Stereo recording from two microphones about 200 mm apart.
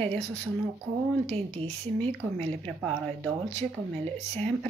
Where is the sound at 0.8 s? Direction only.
30° right (ahead or behind).